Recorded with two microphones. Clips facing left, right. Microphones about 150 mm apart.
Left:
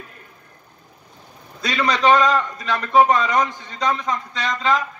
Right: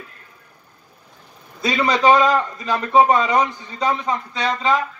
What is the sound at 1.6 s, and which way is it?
A man's voice, 25° right (ahead or behind).